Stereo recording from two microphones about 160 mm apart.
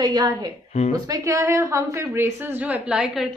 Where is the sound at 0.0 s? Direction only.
25° right (ahead or behind).